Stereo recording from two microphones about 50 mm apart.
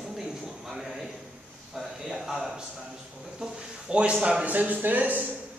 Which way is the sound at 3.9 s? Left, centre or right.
Right.